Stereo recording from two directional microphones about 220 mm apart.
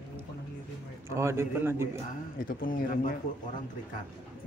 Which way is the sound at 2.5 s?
40° left (ahead or behind).